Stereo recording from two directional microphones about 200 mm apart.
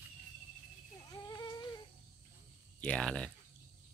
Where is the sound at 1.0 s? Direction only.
20° left (ahead or behind).